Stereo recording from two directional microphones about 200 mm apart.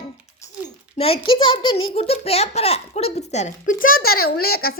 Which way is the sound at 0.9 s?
30° left (ahead or behind).